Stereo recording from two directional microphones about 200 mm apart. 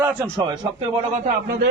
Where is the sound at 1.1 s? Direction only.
45° right (ahead or behind).